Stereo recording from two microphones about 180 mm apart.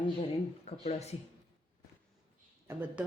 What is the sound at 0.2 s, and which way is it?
Speech, 35° left (ahead or behind).